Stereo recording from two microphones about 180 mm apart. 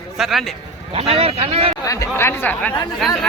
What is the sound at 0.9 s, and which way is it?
Speech, 35° right (ahead or behind).